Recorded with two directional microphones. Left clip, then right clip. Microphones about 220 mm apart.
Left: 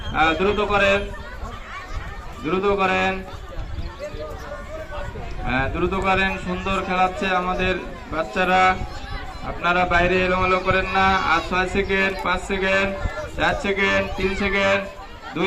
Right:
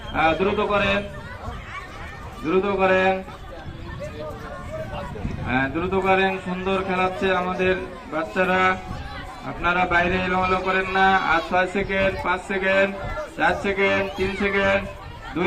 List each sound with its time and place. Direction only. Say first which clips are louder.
0.1 s speech: left 1 dB; 50° left (ahead or behind)
2.5 s a man's voice: right 1 dB; 40° left (ahead or behind)
5.5 s a man's voice: left 1 dB; 40° left (ahead or behind)